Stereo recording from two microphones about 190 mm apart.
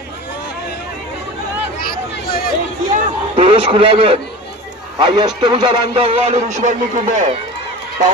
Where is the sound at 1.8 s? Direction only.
55° left (ahead or behind).